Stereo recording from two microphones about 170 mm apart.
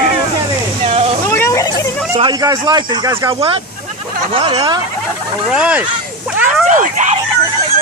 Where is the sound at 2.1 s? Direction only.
25° right (ahead or behind).